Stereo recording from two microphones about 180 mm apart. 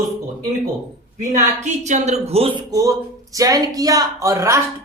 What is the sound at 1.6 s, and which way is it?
A woman's voice, 40° right (ahead or behind).